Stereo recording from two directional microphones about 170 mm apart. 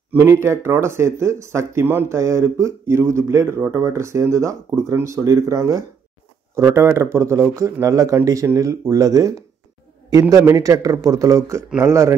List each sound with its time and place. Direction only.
0.1 s speech: 15° right (ahead or behind)